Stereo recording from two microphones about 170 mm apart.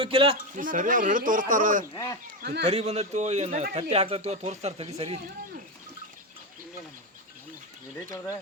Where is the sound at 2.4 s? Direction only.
75° right (ahead or behind).